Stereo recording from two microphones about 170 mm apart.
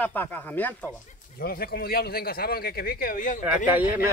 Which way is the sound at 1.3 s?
60° left (ahead or behind).